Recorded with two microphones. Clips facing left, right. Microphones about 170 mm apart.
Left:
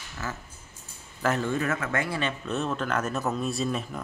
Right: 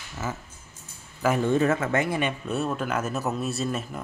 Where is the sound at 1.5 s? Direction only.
25° right (ahead or behind).